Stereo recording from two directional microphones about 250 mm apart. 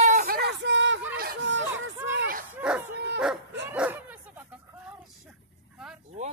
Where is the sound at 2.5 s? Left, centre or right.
Centre.